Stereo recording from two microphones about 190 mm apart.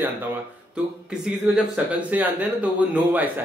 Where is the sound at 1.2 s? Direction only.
5° right (ahead or behind).